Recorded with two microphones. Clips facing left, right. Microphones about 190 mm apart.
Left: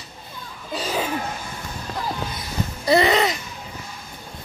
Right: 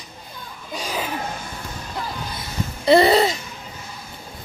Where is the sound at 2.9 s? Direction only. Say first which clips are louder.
Right 4 dB; 30° right (ahead or behind).